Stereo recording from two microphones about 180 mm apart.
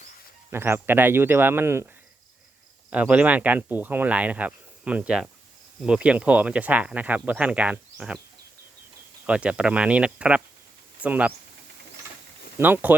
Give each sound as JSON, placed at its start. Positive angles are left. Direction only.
{"t": 0.5, "sound": "speech", "side_deg": -15}
{"t": 2.9, "sound": "speech", "side_deg": -10}
{"t": 9.2, "sound": "speech", "side_deg": -5}
{"t": 12.5, "sound": "speech", "side_deg": -10}